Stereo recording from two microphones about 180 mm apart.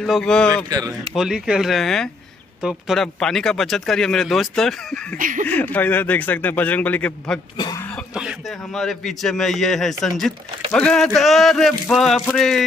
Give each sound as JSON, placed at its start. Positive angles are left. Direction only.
{"t": 0.0, "sound": "a man's voice", "side_deg": 5}
{"t": 0.7, "sound": "speech", "side_deg": -20}
{"t": 1.1, "sound": "a man's voice", "side_deg": 0}
{"t": 5.1, "sound": "speech", "side_deg": -45}
{"t": 5.5, "sound": "a man's voice", "side_deg": 10}
{"t": 7.5, "sound": "speech", "side_deg": 25}
{"t": 8.1, "sound": "a man's voice", "side_deg": -5}